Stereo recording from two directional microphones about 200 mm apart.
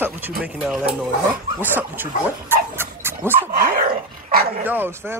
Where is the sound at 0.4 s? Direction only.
5° right (ahead or behind).